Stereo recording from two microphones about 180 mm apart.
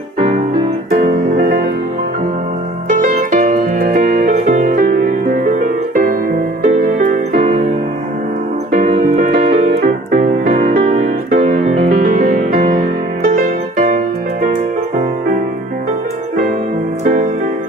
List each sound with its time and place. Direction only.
0.8 s music: 60° right (ahead or behind)
3.0 s music: 50° right (ahead or behind)
4.3 s music: 45° right (ahead or behind)
8.9 s music: 50° right (ahead or behind)
9.8 s music: 35° right (ahead or behind)
10.4 s music: 50° right (ahead or behind)
10.8 s music: 35° right (ahead or behind)
12.4 s music: 55° right (ahead or behind)
17.0 s music: 45° right (ahead or behind)